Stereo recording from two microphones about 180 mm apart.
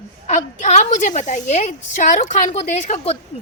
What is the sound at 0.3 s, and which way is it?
A woman's voice, 40° left (ahead or behind).